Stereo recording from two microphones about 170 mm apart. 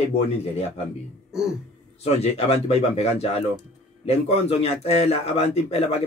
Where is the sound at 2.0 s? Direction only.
35° left (ahead or behind).